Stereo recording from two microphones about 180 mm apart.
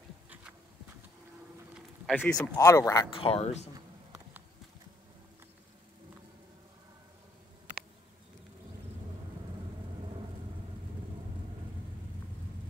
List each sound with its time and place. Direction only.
2.0 s speech: 5° left (ahead or behind)
3.2 s speech: 35° left (ahead or behind)